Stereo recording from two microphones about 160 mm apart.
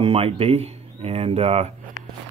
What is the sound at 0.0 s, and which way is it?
Speech, 35° right (ahead or behind).